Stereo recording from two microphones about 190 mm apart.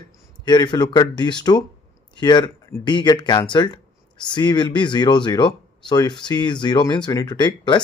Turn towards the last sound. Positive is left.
turn(degrees=25)  # may be behind; listen again after turning